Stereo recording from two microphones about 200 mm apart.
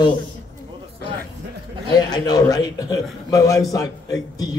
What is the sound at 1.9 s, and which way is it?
A man's voice, 20° left (ahead or behind).